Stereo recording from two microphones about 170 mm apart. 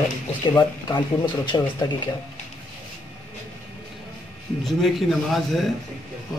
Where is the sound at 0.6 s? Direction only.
25° left (ahead or behind).